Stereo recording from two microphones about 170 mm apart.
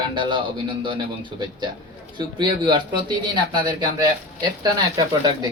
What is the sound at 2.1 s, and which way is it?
Speech, 25° right (ahead or behind).